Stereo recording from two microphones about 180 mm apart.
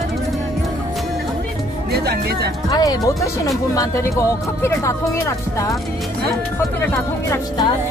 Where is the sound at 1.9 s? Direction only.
60° right (ahead or behind).